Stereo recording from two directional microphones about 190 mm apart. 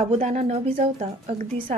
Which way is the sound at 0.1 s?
35° right (ahead or behind).